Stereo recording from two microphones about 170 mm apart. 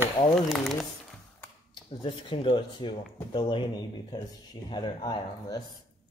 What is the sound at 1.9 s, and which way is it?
Speech, 30° left (ahead or behind).